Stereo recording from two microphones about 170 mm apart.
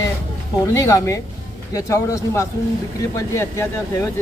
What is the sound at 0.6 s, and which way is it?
Speech, 20° left (ahead or behind).